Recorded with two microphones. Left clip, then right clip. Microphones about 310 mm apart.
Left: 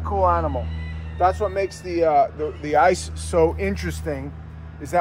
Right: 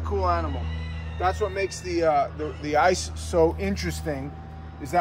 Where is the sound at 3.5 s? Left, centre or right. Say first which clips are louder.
Left 3 dB; centre.